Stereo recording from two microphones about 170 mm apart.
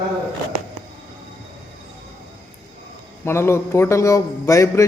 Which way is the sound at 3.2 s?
15° left (ahead or behind).